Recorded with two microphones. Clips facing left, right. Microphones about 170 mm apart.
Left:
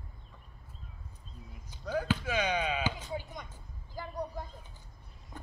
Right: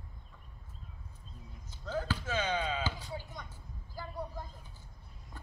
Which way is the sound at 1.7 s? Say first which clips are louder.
Left 4 dB; 15° left (ahead or behind).